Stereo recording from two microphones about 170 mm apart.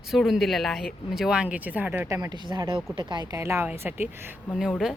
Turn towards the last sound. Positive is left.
turn(degrees=0)  # may be behind; listen again after turning